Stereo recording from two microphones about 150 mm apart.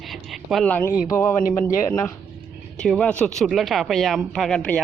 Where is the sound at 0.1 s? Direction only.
Centre (ahead or behind).